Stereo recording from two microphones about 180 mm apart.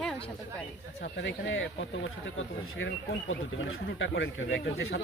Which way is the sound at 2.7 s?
90° left.